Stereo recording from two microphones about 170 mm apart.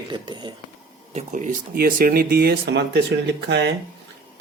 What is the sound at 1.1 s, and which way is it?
Speech, 50° right (ahead or behind).